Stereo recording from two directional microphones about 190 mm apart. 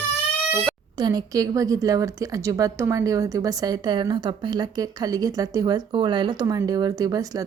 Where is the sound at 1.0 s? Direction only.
20° right (ahead or behind).